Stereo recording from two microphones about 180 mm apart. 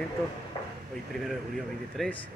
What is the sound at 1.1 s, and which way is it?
Speech, centre (ahead or behind).